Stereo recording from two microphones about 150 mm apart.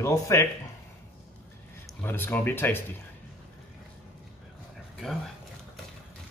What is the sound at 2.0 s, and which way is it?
Speech, 15° left (ahead or behind).